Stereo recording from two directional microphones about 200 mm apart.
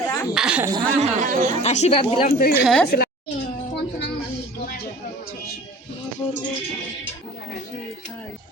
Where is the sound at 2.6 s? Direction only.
5° left (ahead or behind).